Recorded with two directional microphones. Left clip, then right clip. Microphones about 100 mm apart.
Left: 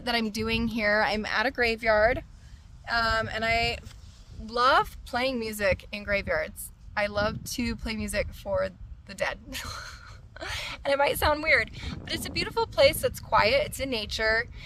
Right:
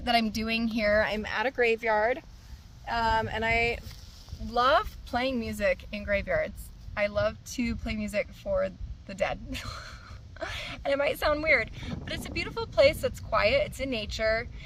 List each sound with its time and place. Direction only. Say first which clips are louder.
0.1 s a woman's voice: right 1 dB; 40° left (ahead or behind)
1.2 s speech: left 3 dB; 55° left (ahead or behind)
1.7 s a woman's voice: left 3 dB; 45° left (ahead or behind)